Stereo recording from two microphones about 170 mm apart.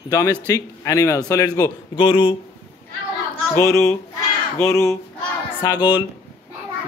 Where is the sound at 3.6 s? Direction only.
15° left (ahead or behind).